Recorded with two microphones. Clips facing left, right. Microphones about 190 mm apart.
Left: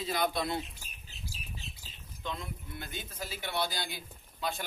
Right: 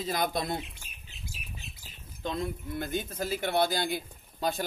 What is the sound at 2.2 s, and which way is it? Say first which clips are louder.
A man's voice: right 7 dB; 40° right (ahead or behind).